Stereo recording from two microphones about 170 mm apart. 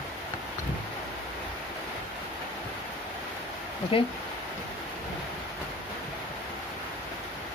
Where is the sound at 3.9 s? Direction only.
30° left (ahead or behind).